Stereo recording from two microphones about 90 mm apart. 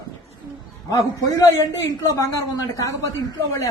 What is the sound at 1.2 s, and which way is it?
A woman's voice, 40° left (ahead or behind).